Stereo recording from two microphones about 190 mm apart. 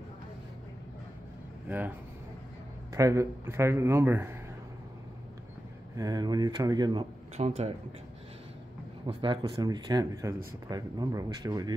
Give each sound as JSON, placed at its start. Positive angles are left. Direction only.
{"t": 1.7, "sound": "a man's voice", "side_deg": -10}
{"t": 5.9, "sound": "speech", "side_deg": -20}
{"t": 9.0, "sound": "speech", "side_deg": -25}